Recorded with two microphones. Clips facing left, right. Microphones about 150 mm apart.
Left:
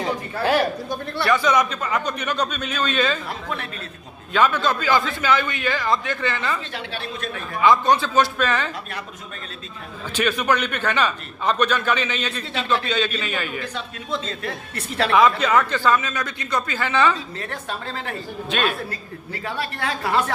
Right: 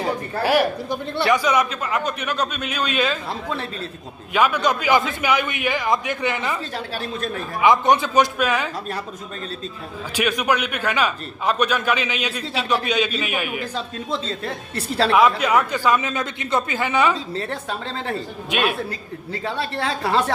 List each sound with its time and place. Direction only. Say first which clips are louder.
0.0 s speech: right 1 dB; 10° right (ahead or behind)
1.1 s a woman's voice: right 1 dB; 20° right (ahead or behind)
1.4 s a man's voice: even; 5° right (ahead or behind)
4.3 s a man's voice: right 1 dB; 10° right (ahead or behind)
6.7 s a woman's voice: right 3 dB; 40° right (ahead or behind)
7.6 s a man's voice: right 1 dB; 20° right (ahead or behind)
10.2 s a man's voice: even; 10° right (ahead or behind)
13.7 s a woman's voice: right 2 dB; 30° right (ahead or behind)
15.1 s a man's voice: even; 10° right (ahead or behind)
17.3 s a woman's voice: right 4 dB; 30° right (ahead or behind)
18.5 s a woman's voice: right 2 dB; 20° right (ahead or behind)